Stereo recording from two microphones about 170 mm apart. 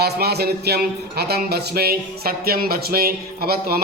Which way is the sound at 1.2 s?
70° right (ahead or behind).